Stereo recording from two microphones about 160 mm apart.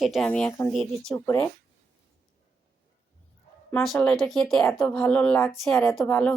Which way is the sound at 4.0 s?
Centre (ahead or behind).